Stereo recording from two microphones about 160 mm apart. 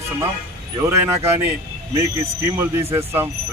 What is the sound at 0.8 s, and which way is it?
Speech, 20° right (ahead or behind).